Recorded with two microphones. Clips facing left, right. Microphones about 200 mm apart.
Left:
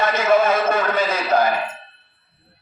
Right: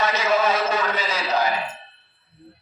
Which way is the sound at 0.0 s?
55° left (ahead or behind).